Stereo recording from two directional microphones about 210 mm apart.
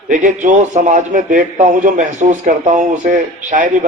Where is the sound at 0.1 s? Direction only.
40° right (ahead or behind).